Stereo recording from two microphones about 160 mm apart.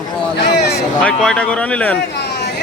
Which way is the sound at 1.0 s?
5° left (ahead or behind).